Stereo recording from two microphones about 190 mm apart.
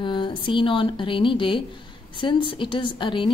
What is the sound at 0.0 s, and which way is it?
A woman's voice, 25° left (ahead or behind).